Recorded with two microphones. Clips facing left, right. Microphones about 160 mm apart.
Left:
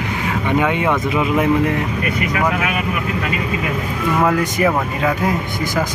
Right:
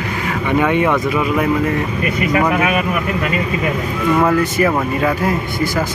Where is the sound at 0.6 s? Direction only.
15° left (ahead or behind).